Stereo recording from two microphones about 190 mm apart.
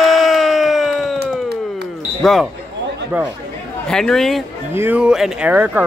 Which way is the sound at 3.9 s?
Centre (ahead or behind).